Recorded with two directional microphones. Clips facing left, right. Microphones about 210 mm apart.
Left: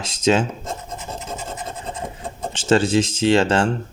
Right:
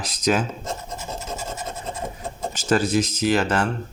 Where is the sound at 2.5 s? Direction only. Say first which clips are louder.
Left 4 dB; 25° left (ahead or behind).